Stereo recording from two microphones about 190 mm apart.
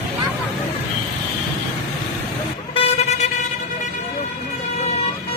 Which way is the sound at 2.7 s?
30° left (ahead or behind).